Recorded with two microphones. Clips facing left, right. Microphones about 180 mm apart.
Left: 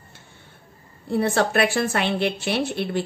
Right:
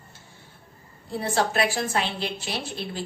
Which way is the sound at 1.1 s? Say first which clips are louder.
Left 5 dB; 60° left (ahead or behind).